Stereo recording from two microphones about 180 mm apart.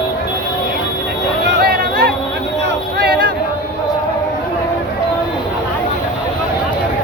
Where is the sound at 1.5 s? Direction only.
65° right (ahead or behind).